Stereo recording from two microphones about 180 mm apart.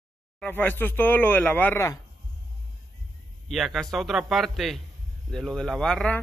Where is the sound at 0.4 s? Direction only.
10° left (ahead or behind).